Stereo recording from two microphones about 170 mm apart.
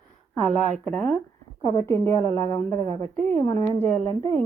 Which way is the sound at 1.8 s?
15° left (ahead or behind).